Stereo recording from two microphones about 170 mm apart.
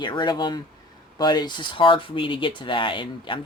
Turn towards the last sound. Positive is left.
turn(degrees=30)  # may be behind; listen again after turning